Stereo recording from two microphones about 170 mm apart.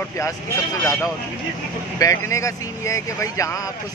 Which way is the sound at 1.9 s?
20° left (ahead or behind).